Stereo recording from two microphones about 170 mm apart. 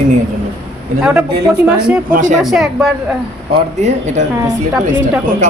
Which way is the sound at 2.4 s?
Centre (ahead or behind).